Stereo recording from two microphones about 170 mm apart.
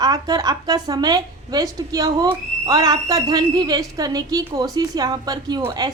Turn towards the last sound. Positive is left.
turn(degrees=-25)  # may be behind; listen again after turning